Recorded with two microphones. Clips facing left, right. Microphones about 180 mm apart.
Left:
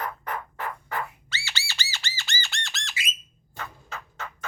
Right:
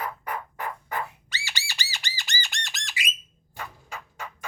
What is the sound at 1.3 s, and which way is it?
Squawk, 15° right (ahead or behind).